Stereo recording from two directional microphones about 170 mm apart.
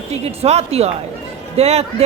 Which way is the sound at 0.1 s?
40° right (ahead or behind).